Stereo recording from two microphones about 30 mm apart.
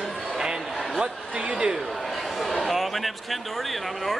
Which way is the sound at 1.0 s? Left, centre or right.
Right.